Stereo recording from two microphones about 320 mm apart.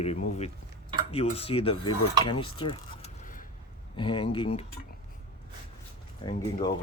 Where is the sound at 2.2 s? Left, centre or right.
Centre.